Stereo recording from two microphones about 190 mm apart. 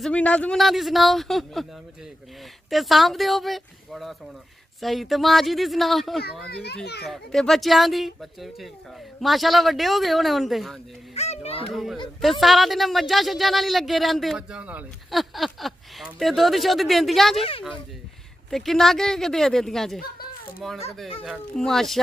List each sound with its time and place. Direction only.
0.0 s speech: 5° left (ahead or behind)
2.7 s speech: centre (ahead or behind)
6.5 s a child's voice: 55° left (ahead or behind)
7.1 s speech: centre (ahead or behind)
11.1 s a child's voice: 35° left (ahead or behind)
11.7 s speech: centre (ahead or behind)
17.4 s speech: 30° left (ahead or behind)
18.5 s speech: centre (ahead or behind)